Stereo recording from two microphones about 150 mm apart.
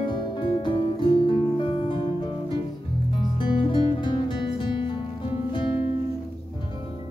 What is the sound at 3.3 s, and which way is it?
Music, 35° left (ahead or behind).